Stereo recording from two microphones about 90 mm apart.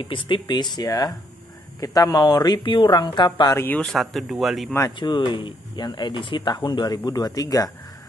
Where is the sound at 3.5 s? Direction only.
20° left (ahead or behind).